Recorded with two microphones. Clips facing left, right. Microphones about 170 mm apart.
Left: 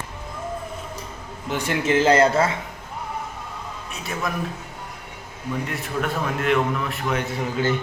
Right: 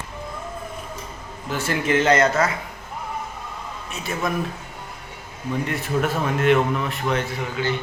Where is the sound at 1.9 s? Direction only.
30° left (ahead or behind).